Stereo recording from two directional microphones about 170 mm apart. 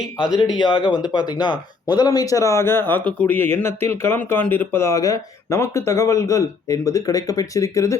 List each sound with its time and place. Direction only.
0.6 s speech: 25° left (ahead or behind)